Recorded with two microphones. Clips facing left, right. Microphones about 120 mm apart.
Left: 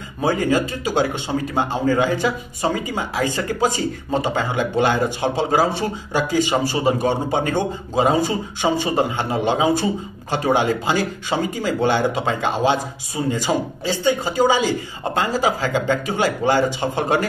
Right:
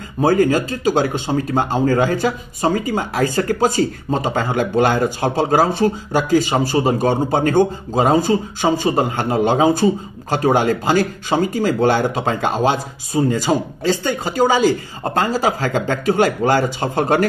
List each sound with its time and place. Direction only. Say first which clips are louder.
0.2 s a man's voice: right 4 dB; 40° right (ahead or behind)